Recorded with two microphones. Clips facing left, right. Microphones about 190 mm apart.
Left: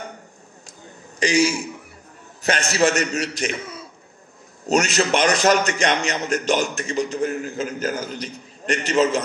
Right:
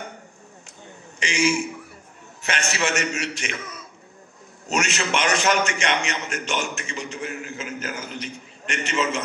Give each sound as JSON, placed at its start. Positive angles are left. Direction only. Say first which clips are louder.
{"t": 1.2, "sound": "a man's voice", "louder": "left 3 dB", "side_deg": 35}